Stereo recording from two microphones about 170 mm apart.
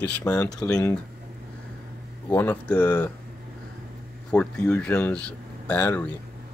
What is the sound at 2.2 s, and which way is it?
Speech, 10° left (ahead or behind).